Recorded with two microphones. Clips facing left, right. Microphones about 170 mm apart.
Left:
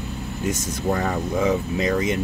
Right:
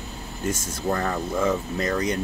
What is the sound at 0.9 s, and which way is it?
Speech, 15° left (ahead or behind).